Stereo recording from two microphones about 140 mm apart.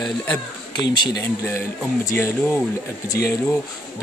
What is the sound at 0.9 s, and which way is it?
Speech, 30° left (ahead or behind).